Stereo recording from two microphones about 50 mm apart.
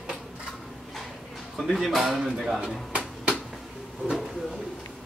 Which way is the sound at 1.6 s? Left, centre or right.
Centre.